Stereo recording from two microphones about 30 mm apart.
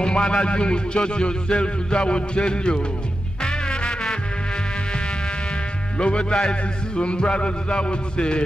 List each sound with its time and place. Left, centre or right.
0.0 s speech: left
3.4 s music: left
5.9 s speech: left